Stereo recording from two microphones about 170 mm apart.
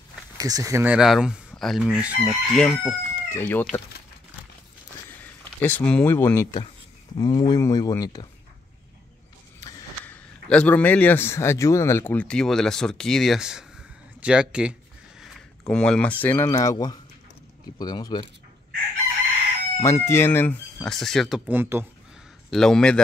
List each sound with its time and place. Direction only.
0.4 s speech: 20° right (ahead or behind)
0.8 s chicken: 5° right (ahead or behind)
2.5 s speech: 5° left (ahead or behind)
5.1 s speech: 10° left (ahead or behind)
10.0 s a man's voice: 10° left (ahead or behind)
14.2 s a sound: 5° right (ahead or behind)
15.7 s a man's voice: 5° left (ahead or behind); by 18.2 s 25° left (ahead or behind)
19.8 s a man's voice: 15° left (ahead or behind)
21.5 s speech: 10° right (ahead or behind)
22.5 s chicken: 5° left (ahead or behind)